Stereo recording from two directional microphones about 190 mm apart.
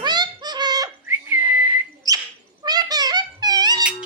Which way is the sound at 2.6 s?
20° right (ahead or behind).